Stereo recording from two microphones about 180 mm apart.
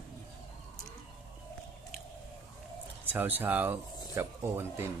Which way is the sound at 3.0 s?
10° right (ahead or behind).